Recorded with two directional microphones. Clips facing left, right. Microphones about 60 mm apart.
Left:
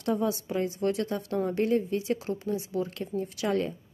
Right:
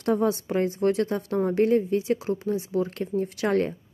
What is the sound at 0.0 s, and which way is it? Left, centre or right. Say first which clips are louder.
A woman's voice: right 4 dB; right.